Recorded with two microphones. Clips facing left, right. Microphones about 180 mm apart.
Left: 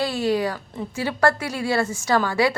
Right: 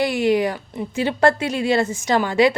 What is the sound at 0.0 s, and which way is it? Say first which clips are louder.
A woman's voice: right 4 dB; 15° right (ahead or behind).